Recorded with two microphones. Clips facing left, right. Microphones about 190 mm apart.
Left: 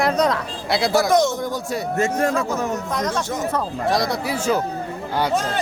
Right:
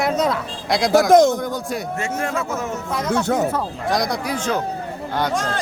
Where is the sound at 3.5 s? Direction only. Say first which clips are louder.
Left 1 dB; centre (ahead or behind).